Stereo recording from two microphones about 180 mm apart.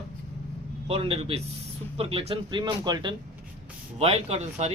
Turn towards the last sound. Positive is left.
turn(degrees=-35)  # may be behind; listen again after turning